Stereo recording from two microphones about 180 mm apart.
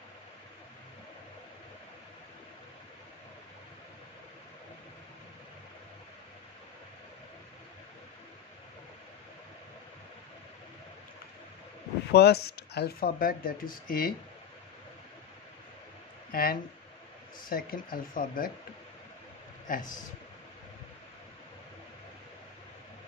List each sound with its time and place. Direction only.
12.1 s speech: 65° left (ahead or behind)
16.3 s a sound: 55° left (ahead or behind)
17.4 s speech: 55° left (ahead or behind)
19.7 s speech: 50° left (ahead or behind)